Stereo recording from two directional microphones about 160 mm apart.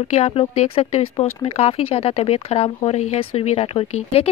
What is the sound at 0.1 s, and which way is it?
A woman's voice, 40° left (ahead or behind).